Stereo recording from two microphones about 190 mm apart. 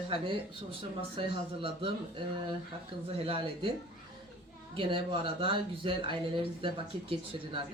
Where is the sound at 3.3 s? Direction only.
30° right (ahead or behind).